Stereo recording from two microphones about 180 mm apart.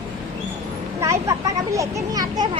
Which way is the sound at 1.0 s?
15° right (ahead or behind).